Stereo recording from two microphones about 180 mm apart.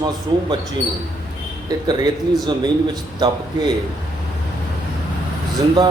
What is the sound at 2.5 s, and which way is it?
Speech, 25° right (ahead or behind).